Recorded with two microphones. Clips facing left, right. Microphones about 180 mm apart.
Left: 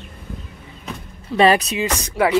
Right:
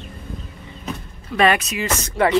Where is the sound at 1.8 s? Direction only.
15° left (ahead or behind).